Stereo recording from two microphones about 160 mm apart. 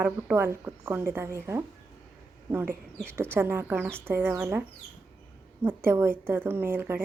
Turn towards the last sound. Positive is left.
turn(degrees=-15)  # may be behind; listen again after turning